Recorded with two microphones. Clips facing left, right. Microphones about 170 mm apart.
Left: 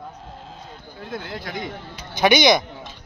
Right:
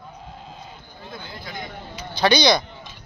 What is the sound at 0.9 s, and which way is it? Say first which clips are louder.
Speech: left 7 dB; 75° left (ahead or behind).